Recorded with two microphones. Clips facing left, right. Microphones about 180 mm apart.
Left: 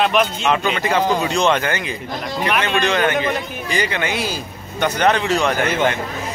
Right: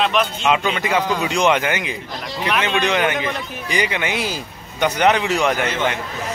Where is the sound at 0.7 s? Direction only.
15° right (ahead or behind).